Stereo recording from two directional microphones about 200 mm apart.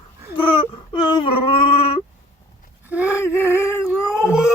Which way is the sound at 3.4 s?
10° left (ahead or behind).